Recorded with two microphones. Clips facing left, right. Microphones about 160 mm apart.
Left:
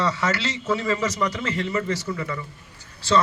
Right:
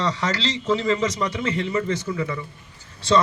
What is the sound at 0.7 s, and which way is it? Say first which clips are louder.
A man's voice: right 2 dB; 25° right (ahead or behind).